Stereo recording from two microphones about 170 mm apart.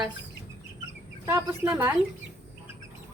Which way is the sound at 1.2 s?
15° right (ahead or behind).